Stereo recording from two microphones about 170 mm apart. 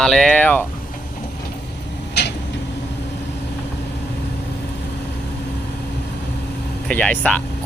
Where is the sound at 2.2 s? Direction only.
80° left.